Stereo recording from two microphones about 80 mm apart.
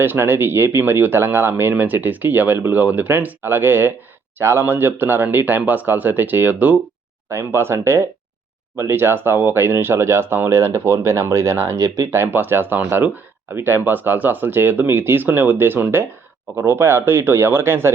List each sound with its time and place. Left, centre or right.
0.0 s speech: right
7.3 s speech: right